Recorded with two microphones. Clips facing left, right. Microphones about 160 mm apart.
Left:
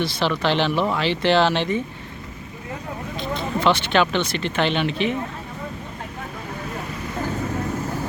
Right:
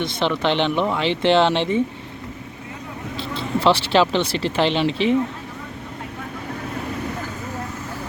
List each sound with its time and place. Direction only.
0.0 s speech: 25° right (ahead or behind)
3.3 s speech: 30° right (ahead or behind)